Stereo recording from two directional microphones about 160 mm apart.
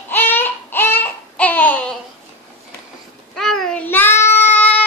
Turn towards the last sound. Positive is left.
turn(degrees=10)  # may be behind; listen again after turning